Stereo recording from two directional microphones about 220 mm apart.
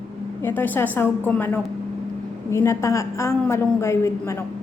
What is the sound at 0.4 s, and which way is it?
Speech, 10° left (ahead or behind).